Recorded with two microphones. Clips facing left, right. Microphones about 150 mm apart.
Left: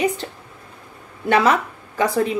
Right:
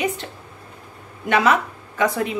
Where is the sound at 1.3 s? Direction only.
35° left (ahead or behind).